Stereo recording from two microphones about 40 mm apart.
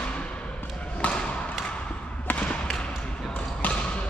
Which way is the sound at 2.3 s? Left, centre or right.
Left.